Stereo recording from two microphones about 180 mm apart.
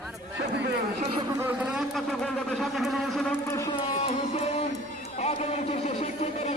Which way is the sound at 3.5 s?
20° left (ahead or behind).